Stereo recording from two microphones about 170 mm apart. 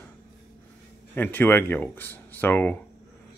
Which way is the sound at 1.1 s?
10° left (ahead or behind).